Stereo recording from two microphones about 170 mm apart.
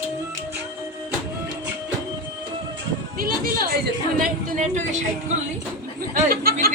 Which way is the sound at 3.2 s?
60° right (ahead or behind).